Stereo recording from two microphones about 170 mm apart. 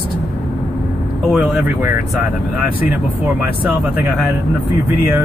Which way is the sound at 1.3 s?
5° right (ahead or behind).